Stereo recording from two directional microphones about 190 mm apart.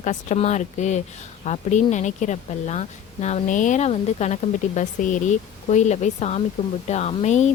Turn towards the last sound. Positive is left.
turn(degrees=40)  # may be behind; listen again after turning